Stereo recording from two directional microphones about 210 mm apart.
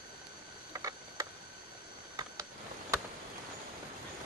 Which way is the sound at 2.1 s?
15° right (ahead or behind).